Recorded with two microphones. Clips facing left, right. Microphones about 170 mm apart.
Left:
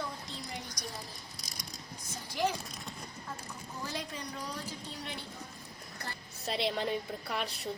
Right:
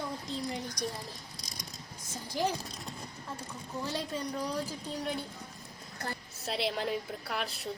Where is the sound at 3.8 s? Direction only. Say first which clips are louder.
Right 3 dB; 30° right (ahead or behind).